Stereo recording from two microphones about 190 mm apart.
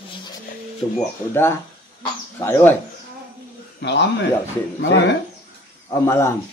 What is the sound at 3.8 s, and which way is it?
A man's voice, 65° left (ahead or behind).